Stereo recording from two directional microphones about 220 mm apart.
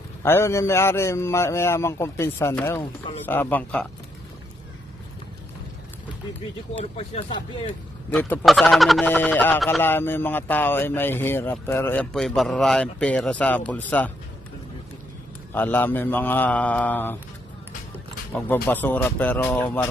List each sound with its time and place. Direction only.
0.2 s speech: 10° left (ahead or behind)
6.8 s speech: 30° left (ahead or behind)
8.1 s speech: 10° left (ahead or behind)
15.5 s speech: 10° left (ahead or behind)
18.3 s speech: 10° left (ahead or behind)